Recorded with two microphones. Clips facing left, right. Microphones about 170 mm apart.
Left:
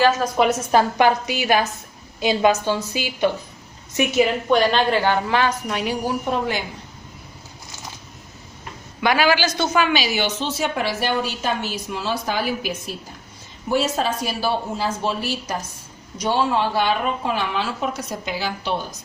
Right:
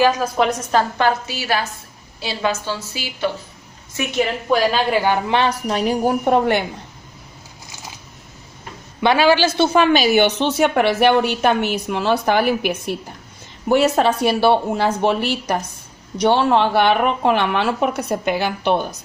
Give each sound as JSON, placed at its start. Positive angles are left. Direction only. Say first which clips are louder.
{"t": 0.0, "sound": "a woman's voice", "louder": "right 1 dB", "side_deg": -15}
{"t": 0.4, "sound": "a woman's voice", "louder": "left 2 dB", "side_deg": 5}
{"t": 4.1, "sound": "a woman's voice", "louder": "even", "side_deg": 0}
{"t": 5.4, "sound": "a woman's voice", "louder": "right 3 dB", "side_deg": -35}
{"t": 9.0, "sound": "a woman's voice", "louder": "right 4 dB", "side_deg": -25}
{"t": 9.9, "sound": "a woman's voice", "louder": "right 7 dB", "side_deg": -55}